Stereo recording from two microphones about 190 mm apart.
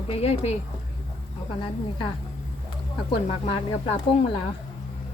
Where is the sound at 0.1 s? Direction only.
30° left (ahead or behind).